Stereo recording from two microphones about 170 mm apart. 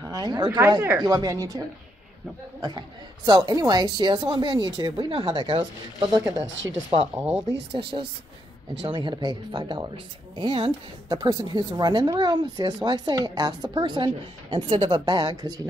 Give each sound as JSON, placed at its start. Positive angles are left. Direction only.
{"t": 0.1, "sound": "speech", "side_deg": -25}
{"t": 3.3, "sound": "speech", "side_deg": -25}
{"t": 6.4, "sound": "speech", "side_deg": -90}
{"t": 6.9, "sound": "speech", "side_deg": -25}
{"t": 8.8, "sound": "speech", "side_deg": -30}